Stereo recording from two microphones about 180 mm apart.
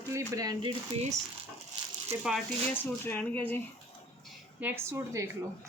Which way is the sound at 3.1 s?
10° left (ahead or behind).